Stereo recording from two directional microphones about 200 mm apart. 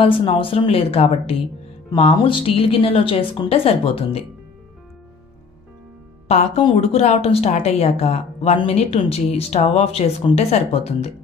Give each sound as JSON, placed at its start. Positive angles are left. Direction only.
{"t": 0.0, "sound": "a woman's voice", "side_deg": 25}
{"t": 6.2, "sound": "speech", "side_deg": 30}